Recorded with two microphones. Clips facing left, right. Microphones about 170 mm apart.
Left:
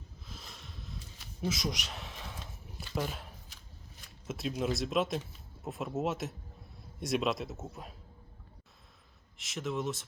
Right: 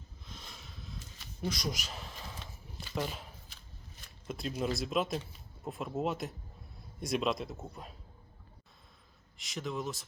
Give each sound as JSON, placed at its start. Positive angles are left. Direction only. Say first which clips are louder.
{"t": 0.3, "sound": "a sound", "louder": "even", "side_deg": 0}
{"t": 4.3, "sound": "speech", "louder": "left 1 dB", "side_deg": 0}
{"t": 9.4, "sound": "speech", "louder": "left 2 dB", "side_deg": 0}